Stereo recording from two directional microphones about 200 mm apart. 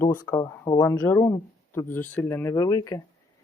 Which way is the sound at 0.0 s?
10° left (ahead or behind).